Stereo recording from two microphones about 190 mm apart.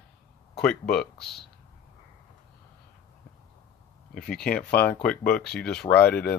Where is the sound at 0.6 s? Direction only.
5° left (ahead or behind).